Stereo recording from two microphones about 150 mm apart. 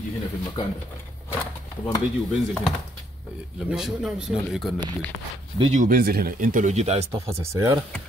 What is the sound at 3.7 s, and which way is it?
Speech, 5° right (ahead or behind).